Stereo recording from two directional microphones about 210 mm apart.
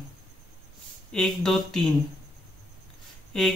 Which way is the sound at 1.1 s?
5° left (ahead or behind).